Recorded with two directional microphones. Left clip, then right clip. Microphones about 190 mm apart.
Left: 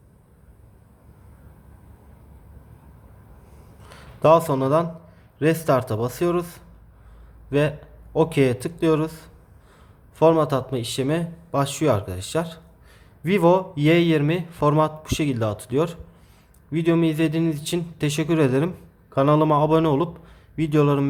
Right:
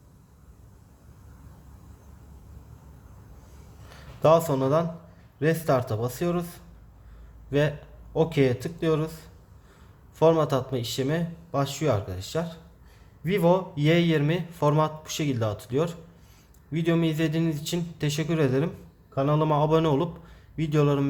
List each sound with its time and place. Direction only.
3.8 s speech: 15° left (ahead or behind)
19.1 s a man's voice: 30° left (ahead or behind)
19.4 s speech: 15° left (ahead or behind)